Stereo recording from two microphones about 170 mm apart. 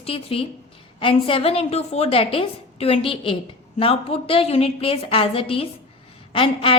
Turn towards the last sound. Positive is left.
turn(degrees=30)  # may be behind; listen again after turning